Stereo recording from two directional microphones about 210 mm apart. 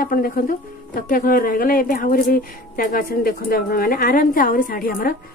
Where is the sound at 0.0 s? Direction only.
45° left (ahead or behind).